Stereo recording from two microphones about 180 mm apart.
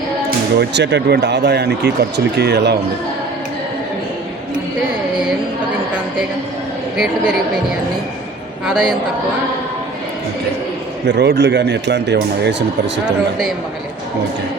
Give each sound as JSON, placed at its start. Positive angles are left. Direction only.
{"t": 0.3, "sound": "speech", "side_deg": -70}
{"t": 6.9, "sound": "a woman's voice", "side_deg": -5}
{"t": 8.6, "sound": "a woman's voice", "side_deg": -5}
{"t": 11.0, "sound": "speech", "side_deg": -70}